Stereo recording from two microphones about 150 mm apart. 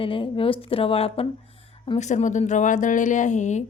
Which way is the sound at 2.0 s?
50° left (ahead or behind).